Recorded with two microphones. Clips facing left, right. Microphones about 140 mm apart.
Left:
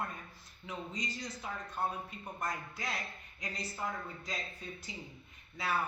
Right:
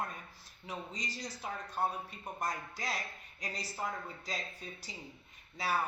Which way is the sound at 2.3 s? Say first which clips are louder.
Right 1 dB; 35° right (ahead or behind).